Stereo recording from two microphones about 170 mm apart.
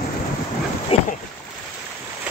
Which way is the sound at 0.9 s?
35° left (ahead or behind).